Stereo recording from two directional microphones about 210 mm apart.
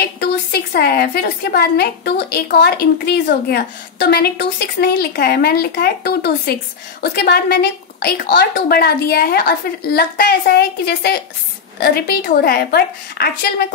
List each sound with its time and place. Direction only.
0.0 s a woman's voice: 50° left (ahead or behind)